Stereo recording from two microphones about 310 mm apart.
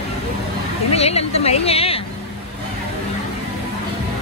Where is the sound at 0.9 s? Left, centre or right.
Centre.